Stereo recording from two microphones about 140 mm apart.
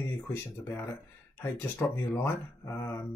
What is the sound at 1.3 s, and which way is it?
Speech, 15° left (ahead or behind).